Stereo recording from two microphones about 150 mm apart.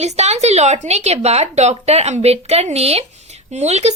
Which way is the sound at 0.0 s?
45° right (ahead or behind).